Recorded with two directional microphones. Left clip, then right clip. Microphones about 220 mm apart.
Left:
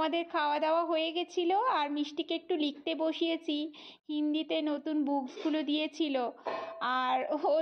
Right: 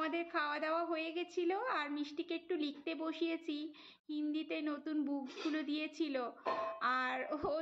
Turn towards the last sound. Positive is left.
turn(degrees=25)  # may be behind; listen again after turning